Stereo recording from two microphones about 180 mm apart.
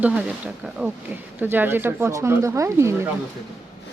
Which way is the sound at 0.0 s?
5° right (ahead or behind).